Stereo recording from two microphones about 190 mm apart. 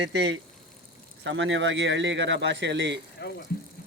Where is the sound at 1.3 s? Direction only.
80° right.